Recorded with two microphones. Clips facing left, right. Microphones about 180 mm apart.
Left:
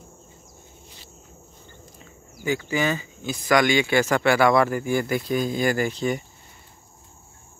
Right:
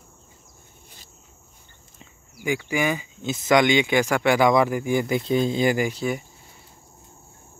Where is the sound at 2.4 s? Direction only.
10° right (ahead or behind).